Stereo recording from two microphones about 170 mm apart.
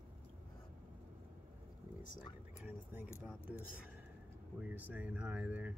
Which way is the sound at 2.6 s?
10° right (ahead or behind).